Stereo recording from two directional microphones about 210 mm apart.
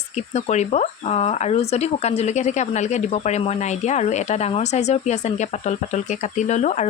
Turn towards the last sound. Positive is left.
turn(degrees=35)  # may be behind; listen again after turning